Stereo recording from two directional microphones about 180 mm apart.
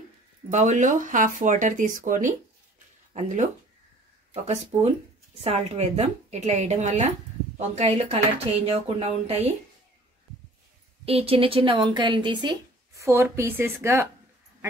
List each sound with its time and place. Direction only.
0.5 s speech: 40° right (ahead or behind)
11.1 s a woman's voice: 30° right (ahead or behind); by 14.0 s 15° right (ahead or behind)